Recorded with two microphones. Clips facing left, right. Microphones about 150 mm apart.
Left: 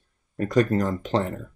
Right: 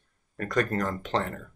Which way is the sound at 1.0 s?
30° left (ahead or behind).